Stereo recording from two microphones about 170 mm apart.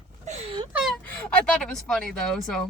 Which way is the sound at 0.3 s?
40° right (ahead or behind).